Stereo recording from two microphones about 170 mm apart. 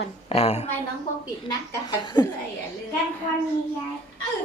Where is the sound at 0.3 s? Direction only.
40° left (ahead or behind).